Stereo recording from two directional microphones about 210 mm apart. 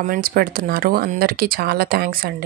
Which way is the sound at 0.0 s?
45° right (ahead or behind).